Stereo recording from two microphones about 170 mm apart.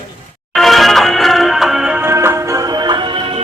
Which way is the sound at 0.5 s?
Centre (ahead or behind).